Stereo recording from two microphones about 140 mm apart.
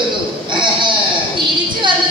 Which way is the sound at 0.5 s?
35° right (ahead or behind).